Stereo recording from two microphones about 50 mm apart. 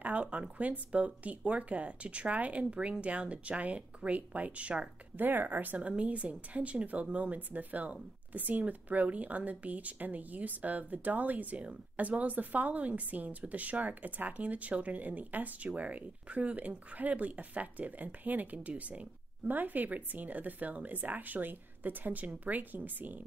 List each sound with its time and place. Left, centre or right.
0.0 s speech: right
5.1 s speech: right
5.8 s speech: right